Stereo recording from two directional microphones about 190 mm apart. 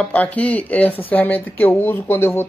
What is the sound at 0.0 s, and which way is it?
Speech, 10° left (ahead or behind).